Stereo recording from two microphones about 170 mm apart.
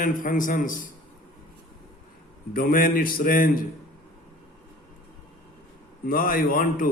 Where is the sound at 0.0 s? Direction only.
50° left (ahead or behind).